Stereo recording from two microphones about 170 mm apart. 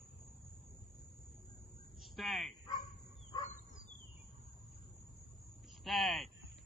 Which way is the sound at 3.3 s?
20° left (ahead or behind).